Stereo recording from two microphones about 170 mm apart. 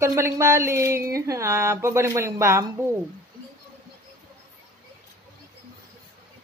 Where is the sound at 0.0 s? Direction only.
15° right (ahead or behind).